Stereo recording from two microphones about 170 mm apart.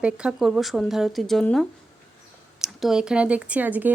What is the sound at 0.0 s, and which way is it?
Speech, 5° right (ahead or behind).